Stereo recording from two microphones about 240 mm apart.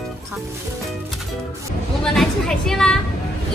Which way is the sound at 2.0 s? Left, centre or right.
Centre.